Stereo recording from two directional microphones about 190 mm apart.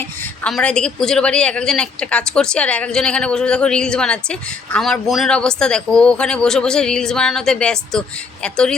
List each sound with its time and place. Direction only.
0.4 s a woman's voice: 5° left (ahead or behind)